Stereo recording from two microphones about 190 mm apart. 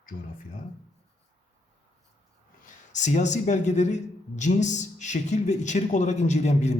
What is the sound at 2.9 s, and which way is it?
Speech, 40° left (ahead or behind).